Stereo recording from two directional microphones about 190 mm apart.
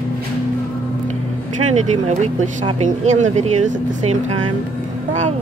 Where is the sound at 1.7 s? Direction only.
40° right (ahead or behind).